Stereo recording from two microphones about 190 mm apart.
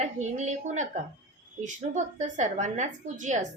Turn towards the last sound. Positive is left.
turn(degrees=-40)  # may be behind; listen again after turning